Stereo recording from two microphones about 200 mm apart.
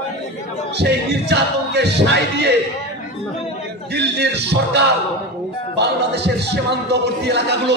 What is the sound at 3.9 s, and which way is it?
Music, 55° right (ahead or behind).